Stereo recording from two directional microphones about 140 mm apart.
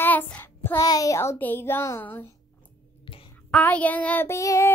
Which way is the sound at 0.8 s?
25° left (ahead or behind).